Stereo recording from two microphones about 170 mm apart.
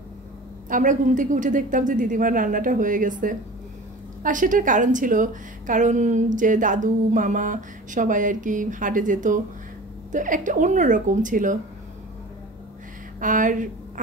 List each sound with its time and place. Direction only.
0.7 s a woman's voice: 50° right (ahead or behind)
13.2 s a woman's voice: 50° right (ahead or behind)